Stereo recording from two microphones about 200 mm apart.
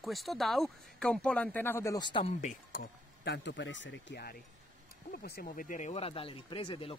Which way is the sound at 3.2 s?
60° left (ahead or behind).